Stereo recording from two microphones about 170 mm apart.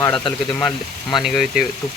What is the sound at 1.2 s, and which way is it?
Speech, centre (ahead or behind).